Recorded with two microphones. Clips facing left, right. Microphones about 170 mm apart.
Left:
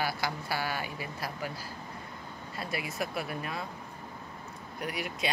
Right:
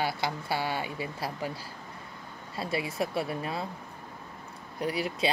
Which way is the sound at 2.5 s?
30° right (ahead or behind).